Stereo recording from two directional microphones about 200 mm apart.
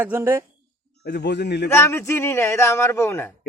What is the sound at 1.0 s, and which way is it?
Speech, 55° left (ahead or behind).